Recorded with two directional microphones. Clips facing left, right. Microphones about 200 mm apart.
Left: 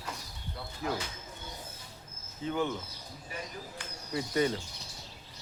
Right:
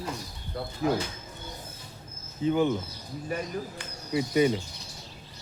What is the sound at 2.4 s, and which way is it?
Speech, 15° right (ahead or behind).